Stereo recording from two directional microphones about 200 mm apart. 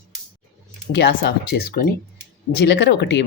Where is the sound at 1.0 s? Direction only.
55° left (ahead or behind).